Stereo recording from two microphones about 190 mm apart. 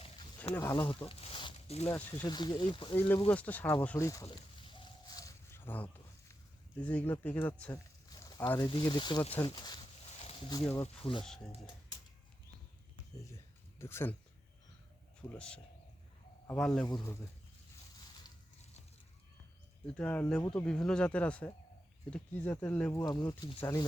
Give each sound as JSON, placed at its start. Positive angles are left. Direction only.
{"t": 0.5, "sound": "speech", "side_deg": 15}
{"t": 1.9, "sound": "speech", "side_deg": 10}
{"t": 2.2, "sound": "speech", "side_deg": 20}
{"t": 3.2, "sound": "speech", "side_deg": 10}
{"t": 4.3, "sound": "a sound", "side_deg": 25}
{"t": 6.7, "sound": "speech", "side_deg": 10}
{"t": 8.1, "sound": "a sound", "side_deg": 20}
{"t": 8.4, "sound": "speech", "side_deg": 20}
{"t": 10.2, "sound": "a sound", "side_deg": 30}
{"t": 10.6, "sound": "speech", "side_deg": 10}
{"t": 10.8, "sound": "speech", "side_deg": 30}
{"t": 13.2, "sound": "a sound", "side_deg": 15}
{"t": 15.3, "sound": "speech", "side_deg": 5}
{"t": 19.9, "sound": "speech", "side_deg": 5}